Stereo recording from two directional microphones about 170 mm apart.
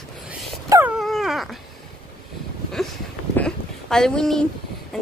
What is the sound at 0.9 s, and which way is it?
Dog, centre (ahead or behind).